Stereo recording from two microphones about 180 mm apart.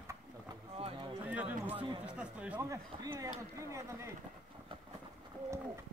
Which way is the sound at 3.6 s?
15° right (ahead or behind).